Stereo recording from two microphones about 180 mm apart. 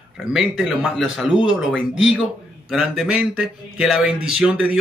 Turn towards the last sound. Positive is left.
turn(degrees=-5)  # may be behind; listen again after turning